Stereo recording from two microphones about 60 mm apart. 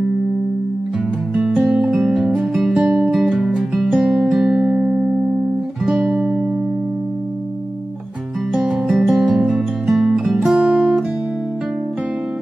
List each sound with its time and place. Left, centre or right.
1.5 s music: centre
2.8 s music: right
3.1 s music: centre
8.5 s music: centre
10.7 s music: right